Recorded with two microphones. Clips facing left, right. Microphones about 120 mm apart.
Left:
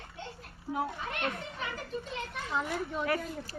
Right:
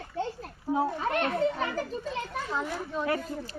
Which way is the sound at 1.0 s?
40° right (ahead or behind).